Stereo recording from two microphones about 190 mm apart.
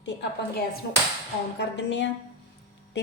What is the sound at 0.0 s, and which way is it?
A woman's voice, 70° left (ahead or behind).